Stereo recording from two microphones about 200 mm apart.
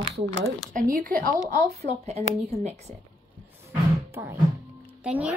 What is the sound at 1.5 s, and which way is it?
Speech, 35° right (ahead or behind).